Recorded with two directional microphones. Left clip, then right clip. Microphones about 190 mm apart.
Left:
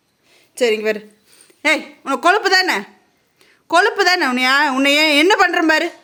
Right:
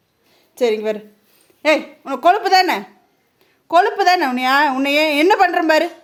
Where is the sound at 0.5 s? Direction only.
10° left (ahead or behind).